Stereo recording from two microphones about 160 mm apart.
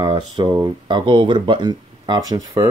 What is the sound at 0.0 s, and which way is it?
Speech, 30° right (ahead or behind).